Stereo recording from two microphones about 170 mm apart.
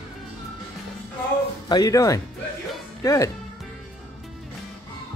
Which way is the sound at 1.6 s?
20° left (ahead or behind).